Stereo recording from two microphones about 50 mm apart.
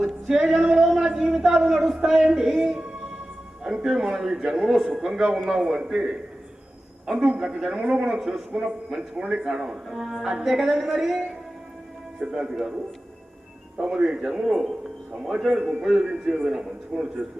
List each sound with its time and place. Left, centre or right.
0.0 s a sound: centre
2.3 s music: centre
3.6 s a woman's voice: centre
5.5 s a woman's voice: centre
7.2 s a woman's voice: centre